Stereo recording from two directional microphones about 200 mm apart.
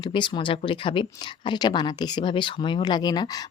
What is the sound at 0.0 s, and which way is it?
Speech, 25° left (ahead or behind).